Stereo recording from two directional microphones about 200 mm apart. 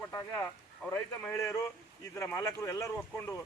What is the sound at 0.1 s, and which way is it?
Speech, 10° left (ahead or behind).